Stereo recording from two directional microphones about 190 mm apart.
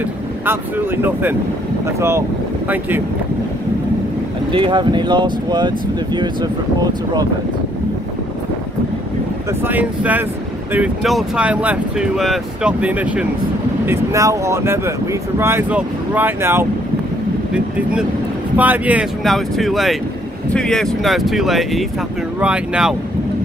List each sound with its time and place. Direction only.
2.0 s speech: 15° right (ahead or behind)
4.5 s speech: 25° right (ahead or behind)
9.6 s speech: 10° right (ahead or behind)
18.6 s speech: 10° right (ahead or behind)